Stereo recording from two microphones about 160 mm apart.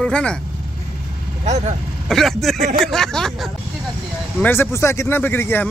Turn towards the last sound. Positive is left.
turn(degrees=15)  # may be behind; listen again after turning